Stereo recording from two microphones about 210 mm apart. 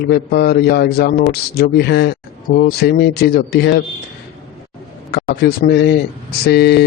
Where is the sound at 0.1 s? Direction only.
50° left (ahead or behind).